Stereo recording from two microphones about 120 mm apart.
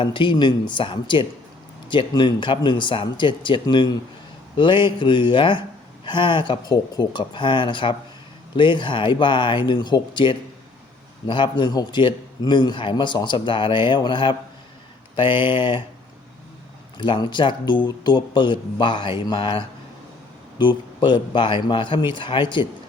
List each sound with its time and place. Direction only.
0.0 s a man's voice: 45° left (ahead or behind)
17.0 s a man's voice: 40° left (ahead or behind)